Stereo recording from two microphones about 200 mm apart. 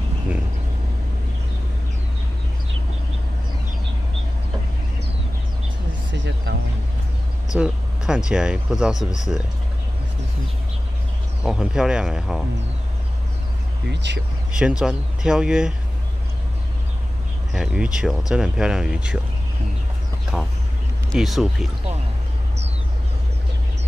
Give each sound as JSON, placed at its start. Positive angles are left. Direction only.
{"t": 6.1, "sound": "a sound", "side_deg": -65}
{"t": 7.5, "sound": "a sound", "side_deg": -5}
{"t": 8.3, "sound": "speech", "side_deg": -5}
{"t": 11.4, "sound": "speech", "side_deg": -5}
{"t": 13.8, "sound": "speech", "side_deg": -60}
{"t": 14.6, "sound": "speech", "side_deg": -5}
{"t": 17.5, "sound": "speech", "side_deg": 0}
{"t": 21.1, "sound": "speech", "side_deg": 0}